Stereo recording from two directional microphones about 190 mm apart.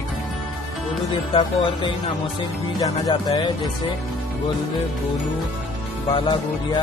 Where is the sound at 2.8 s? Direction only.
20° left (ahead or behind).